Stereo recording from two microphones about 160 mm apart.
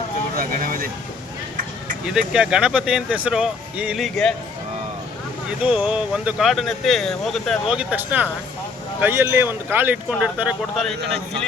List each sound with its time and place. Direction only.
0.3 s a sound: 60° right (ahead or behind)
2.0 s speech: 5° right (ahead or behind)
5.6 s speech: 5° right (ahead or behind)
7.8 s speech: 10° right (ahead or behind)